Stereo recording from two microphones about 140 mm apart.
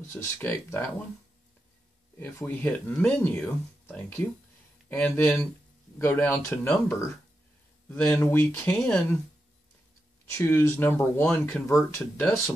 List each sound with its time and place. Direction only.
0.1 s speech: 15° left (ahead or behind)
2.1 s speech: 15° left (ahead or behind)
7.9 s speech: 15° left (ahead or behind)
8.8 s speech: 5° left (ahead or behind)
10.3 s speech: 20° left (ahead or behind)
12.2 s speech: 10° left (ahead or behind)